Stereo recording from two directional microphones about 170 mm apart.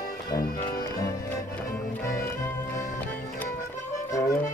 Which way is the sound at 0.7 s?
20° left (ahead or behind).